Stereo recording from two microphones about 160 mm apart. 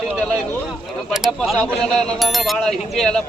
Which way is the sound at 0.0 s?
5° left (ahead or behind).